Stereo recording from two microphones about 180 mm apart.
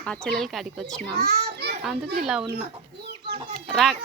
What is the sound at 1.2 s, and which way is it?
Children playing, 60° right (ahead or behind).